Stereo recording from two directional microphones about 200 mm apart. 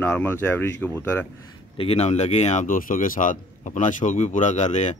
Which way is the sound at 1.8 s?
30° left (ahead or behind).